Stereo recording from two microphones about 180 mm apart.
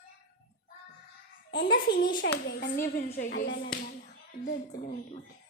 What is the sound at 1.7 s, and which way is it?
A woman's voice, 55° left (ahead or behind).